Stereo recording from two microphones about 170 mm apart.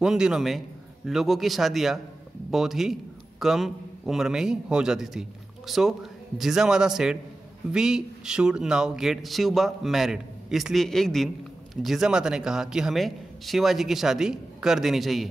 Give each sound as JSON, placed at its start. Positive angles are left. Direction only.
{"t": 0.0, "sound": "a man's voice", "side_deg": -5}